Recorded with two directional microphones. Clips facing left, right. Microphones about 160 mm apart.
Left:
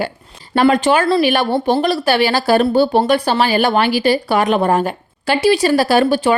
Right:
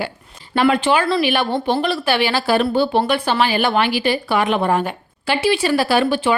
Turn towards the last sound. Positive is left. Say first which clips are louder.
# left 3 dB
turn(degrees=40)  # may be behind; listen again after turning